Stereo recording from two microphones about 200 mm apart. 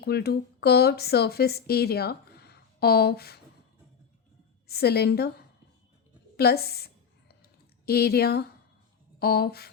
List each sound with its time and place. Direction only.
0.0 s speech: 50° left (ahead or behind)
4.7 s a woman's voice: 50° left (ahead or behind)
6.3 s a sound: 50° left (ahead or behind)
9.1 s speech: 50° left (ahead or behind)